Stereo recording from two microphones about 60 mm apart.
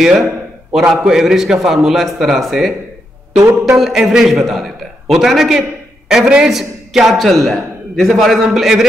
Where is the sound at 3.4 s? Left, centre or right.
Right.